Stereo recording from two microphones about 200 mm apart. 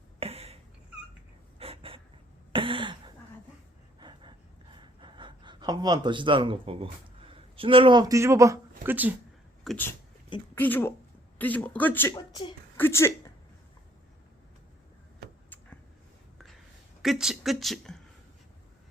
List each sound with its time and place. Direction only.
0.2 s a sound: 30° right (ahead or behind)
1.5 s a sound: 30° right (ahead or behind)
2.5 s throat clearing: 25° right (ahead or behind)
4.0 s gasp: 25° right (ahead or behind)
9.6 s speech: 10° left (ahead or behind)
17.0 s speech: centre (ahead or behind)